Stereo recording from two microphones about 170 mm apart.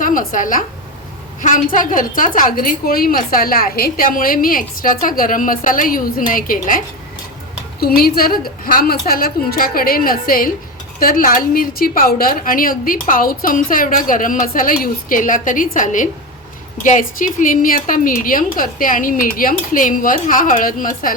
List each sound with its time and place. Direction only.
0.0 s a woman's voice: 50° left (ahead or behind)